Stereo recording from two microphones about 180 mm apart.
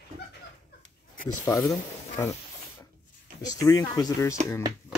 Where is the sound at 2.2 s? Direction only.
15° left (ahead or behind).